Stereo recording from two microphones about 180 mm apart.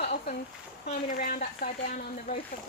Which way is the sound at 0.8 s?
50° left (ahead or behind).